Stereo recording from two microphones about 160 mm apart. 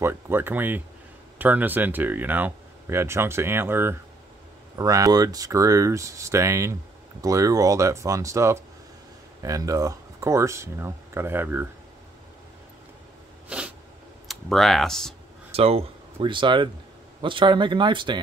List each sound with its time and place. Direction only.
0.0 s speech: 15° right (ahead or behind)
13.5 s a sound: 10° right (ahead or behind)
14.2 s speech: centre (ahead or behind)
15.5 s speech: 40° right (ahead or behind)